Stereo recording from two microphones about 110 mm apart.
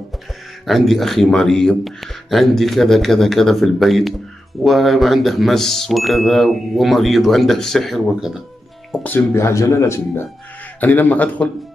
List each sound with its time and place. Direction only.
0.7 s speech: centre (ahead or behind)
9.0 s speech: 20° left (ahead or behind)
10.8 s a man's voice: 15° left (ahead or behind)